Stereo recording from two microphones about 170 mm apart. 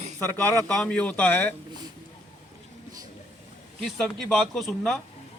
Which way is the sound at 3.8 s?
Centre (ahead or behind).